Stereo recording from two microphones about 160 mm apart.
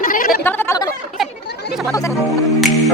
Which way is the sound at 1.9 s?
20° left (ahead or behind).